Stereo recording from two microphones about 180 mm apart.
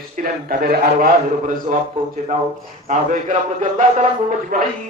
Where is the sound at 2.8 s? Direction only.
45° right (ahead or behind).